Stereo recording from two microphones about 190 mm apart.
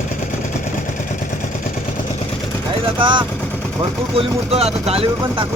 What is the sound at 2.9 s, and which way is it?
Speech, 25° right (ahead or behind).